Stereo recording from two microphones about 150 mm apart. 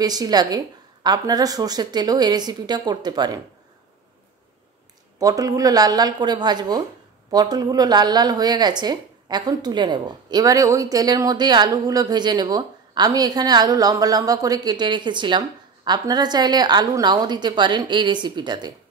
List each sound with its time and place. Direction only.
0.0 s a woman's voice: 25° right (ahead or behind)
5.2 s a woman's voice: 25° right (ahead or behind)